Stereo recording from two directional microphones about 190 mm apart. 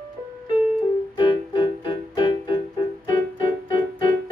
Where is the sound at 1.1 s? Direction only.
25° left (ahead or behind).